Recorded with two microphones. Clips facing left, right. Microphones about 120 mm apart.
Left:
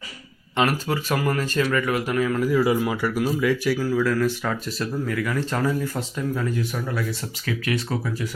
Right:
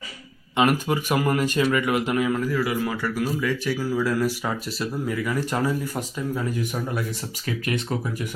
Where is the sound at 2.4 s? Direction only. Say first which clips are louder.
Left 4 dB; 20° left (ahead or behind).